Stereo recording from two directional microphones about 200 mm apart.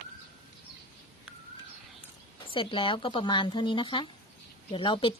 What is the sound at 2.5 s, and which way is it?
Speech, 25° left (ahead or behind).